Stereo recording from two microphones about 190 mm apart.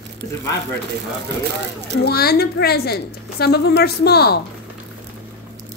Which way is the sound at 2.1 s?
55° left (ahead or behind).